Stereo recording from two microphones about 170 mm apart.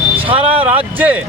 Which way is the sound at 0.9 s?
10° right (ahead or behind).